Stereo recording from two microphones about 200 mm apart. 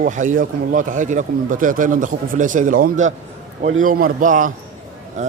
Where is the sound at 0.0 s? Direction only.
40° right (ahead or behind).